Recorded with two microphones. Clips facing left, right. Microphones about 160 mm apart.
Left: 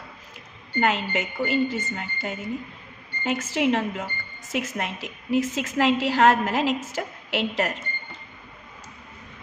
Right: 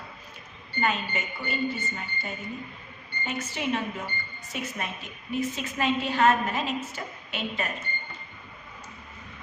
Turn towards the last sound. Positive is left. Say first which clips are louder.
# left 7 dB
turn(degrees=85)